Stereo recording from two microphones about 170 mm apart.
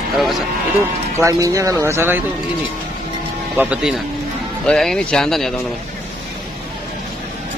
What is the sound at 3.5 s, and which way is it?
Speech, 5° right (ahead or behind).